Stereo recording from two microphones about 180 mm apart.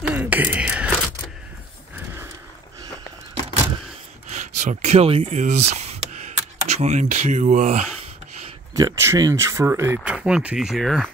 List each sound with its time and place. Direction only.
0.0 s whispering: 10° right (ahead or behind)
4.3 s speech: 40° right (ahead or behind)
8.7 s speech: 20° right (ahead or behind); by 11.1 s centre (ahead or behind)